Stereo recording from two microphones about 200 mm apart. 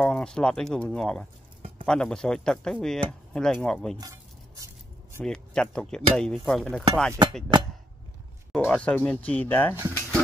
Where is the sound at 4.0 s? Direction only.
15° right (ahead or behind).